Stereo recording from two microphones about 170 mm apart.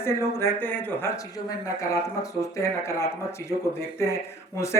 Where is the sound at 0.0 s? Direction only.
15° left (ahead or behind).